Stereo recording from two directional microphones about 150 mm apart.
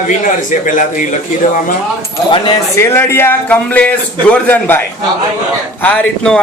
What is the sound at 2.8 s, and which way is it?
Speech, 15° left (ahead or behind).